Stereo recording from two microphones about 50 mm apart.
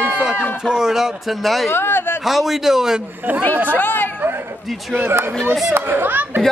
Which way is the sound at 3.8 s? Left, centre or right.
Left.